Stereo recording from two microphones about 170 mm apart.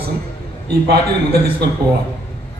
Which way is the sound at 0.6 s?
70° right (ahead or behind).